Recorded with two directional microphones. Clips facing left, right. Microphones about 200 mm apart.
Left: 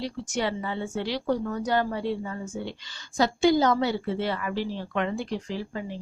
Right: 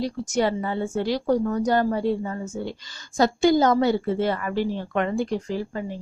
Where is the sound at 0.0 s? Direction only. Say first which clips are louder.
Right 6 dB; 45° right (ahead or behind).